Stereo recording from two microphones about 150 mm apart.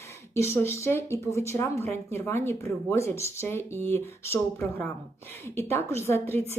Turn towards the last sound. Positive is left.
turn(degrees=15)  # may be behind; listen again after turning